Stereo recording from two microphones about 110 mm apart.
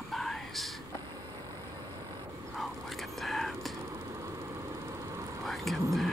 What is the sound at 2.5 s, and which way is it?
Whispering, centre (ahead or behind).